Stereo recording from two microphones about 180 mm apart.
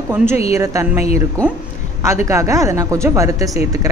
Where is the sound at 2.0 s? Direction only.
15° right (ahead or behind).